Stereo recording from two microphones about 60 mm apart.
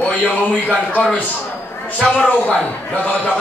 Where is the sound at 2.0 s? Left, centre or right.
Centre.